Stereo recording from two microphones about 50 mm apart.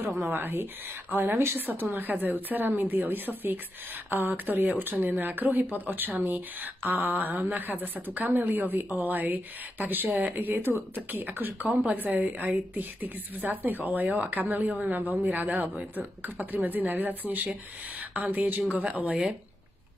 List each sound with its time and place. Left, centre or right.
0.0 s a woman's voice: right